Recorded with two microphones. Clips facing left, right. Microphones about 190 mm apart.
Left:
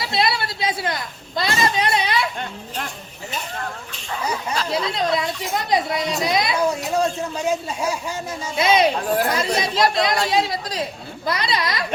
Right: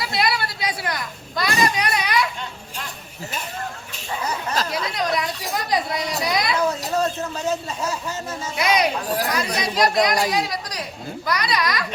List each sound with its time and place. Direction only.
0.0 s a woman's voice: 25° left (ahead or behind)
1.6 s children playing: 25° left (ahead or behind)
4.2 s a man's voice: 10° left (ahead or behind)
4.7 s speech: 25° left (ahead or behind)
6.9 s a man's voice: 10° left (ahead or behind)
8.5 s speech: 25° left (ahead or behind)